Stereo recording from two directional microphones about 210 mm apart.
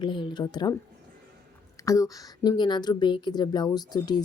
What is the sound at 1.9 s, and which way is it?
Speech, 15° left (ahead or behind).